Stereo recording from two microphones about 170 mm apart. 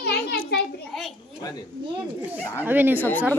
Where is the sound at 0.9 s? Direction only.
Centre (ahead or behind).